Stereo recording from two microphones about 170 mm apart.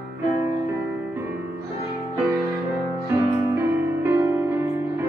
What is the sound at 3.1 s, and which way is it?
Music, 15° right (ahead or behind).